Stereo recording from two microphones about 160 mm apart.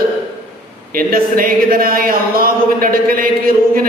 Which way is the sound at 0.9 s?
65° right (ahead or behind).